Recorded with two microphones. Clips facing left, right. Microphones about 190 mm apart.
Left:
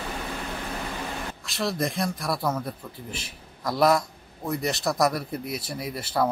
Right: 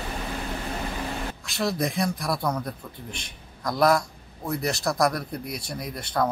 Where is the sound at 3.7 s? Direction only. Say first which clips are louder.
Even; centre (ahead or behind).